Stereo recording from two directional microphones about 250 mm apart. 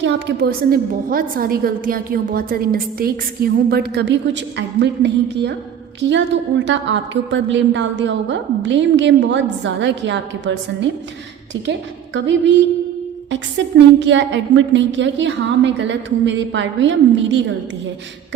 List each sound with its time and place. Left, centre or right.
0.0 s a woman's voice: right